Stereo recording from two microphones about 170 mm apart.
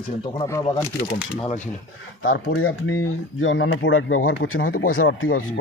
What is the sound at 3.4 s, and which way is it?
Speech, 90° left.